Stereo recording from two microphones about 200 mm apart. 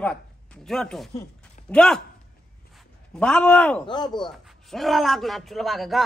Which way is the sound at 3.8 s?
20° left (ahead or behind).